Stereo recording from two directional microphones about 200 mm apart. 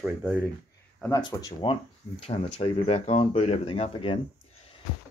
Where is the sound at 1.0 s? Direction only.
15° left (ahead or behind).